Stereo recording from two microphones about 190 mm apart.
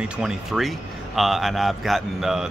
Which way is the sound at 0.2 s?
Centre (ahead or behind).